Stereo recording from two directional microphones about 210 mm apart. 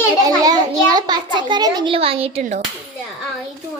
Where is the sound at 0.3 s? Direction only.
20° right (ahead or behind).